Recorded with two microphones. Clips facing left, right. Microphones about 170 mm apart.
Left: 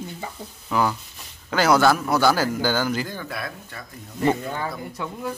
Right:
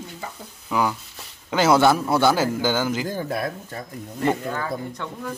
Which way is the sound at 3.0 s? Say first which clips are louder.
Right 6 dB; 40° right (ahead or behind).